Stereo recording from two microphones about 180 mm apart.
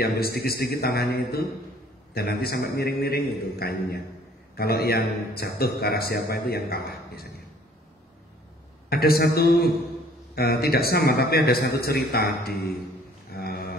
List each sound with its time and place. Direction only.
0.0 s a man's voice: 60° left (ahead or behind)
8.8 s a man's voice: 55° left (ahead or behind)
13.3 s a sound: 60° left (ahead or behind)